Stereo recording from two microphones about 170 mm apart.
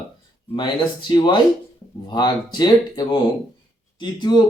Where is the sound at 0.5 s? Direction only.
25° left (ahead or behind).